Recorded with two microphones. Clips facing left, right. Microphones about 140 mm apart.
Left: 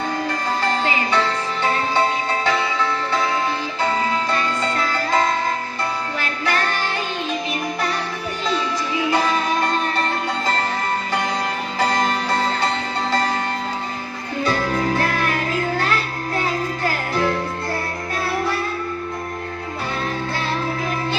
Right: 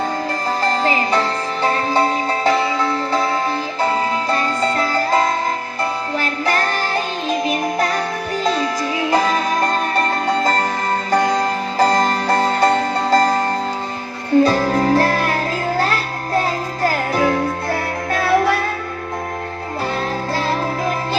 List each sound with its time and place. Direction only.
0.6 s music: 35° right (ahead or behind)
14.4 s music: 40° right (ahead or behind)
18.2 s music: 70° right (ahead or behind)